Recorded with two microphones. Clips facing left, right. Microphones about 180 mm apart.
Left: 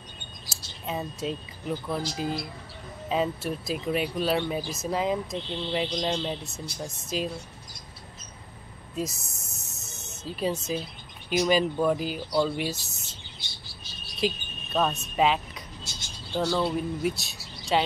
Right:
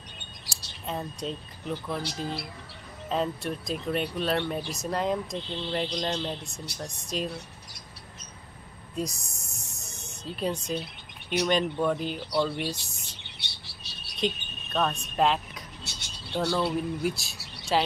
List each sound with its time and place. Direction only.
0.8 s speech: 5° left (ahead or behind)
3.1 s speech: 5° left (ahead or behind)
8.9 s speech: 5° left (ahead or behind)
9.7 s snake: 5° left (ahead or behind)
11.2 s speech: 5° left (ahead or behind)
13.2 s chirp: 70° right (ahead or behind)
14.2 s a sound: 5° left (ahead or behind)
15.8 s bird: 65° right (ahead or behind)
16.3 s speech: centre (ahead or behind)